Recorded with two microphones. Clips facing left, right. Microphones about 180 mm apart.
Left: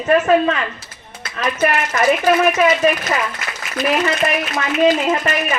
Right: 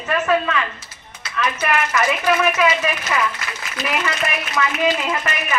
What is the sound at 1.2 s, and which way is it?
A woman's voice, 45° left (ahead or behind).